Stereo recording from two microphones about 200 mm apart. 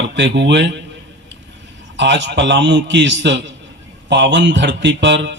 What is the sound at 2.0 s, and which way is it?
A man's voice, 60° right (ahead or behind).